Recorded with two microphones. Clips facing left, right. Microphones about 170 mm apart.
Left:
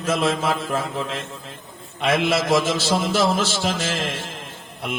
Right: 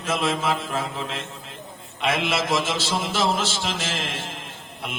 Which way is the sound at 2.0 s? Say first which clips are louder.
Left 4 dB; 40° left (ahead or behind).